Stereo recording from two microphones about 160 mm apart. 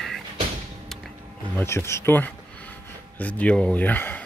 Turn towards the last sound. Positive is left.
turn(degrees=10)  # may be behind; listen again after turning